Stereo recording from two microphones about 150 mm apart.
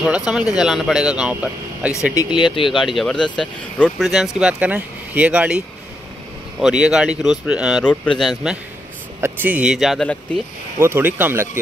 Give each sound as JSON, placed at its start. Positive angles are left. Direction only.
{"t": 0.0, "sound": "speech", "side_deg": -5}
{"t": 2.1, "sound": "speech", "side_deg": 30}
{"t": 2.8, "sound": "speech", "side_deg": 0}
{"t": 4.1, "sound": "speech", "side_deg": -5}
{"t": 6.6, "sound": "speech", "side_deg": -5}
{"t": 7.8, "sound": "speech", "side_deg": 10}
{"t": 9.2, "sound": "speech", "side_deg": -10}
{"t": 10.8, "sound": "speech", "side_deg": -15}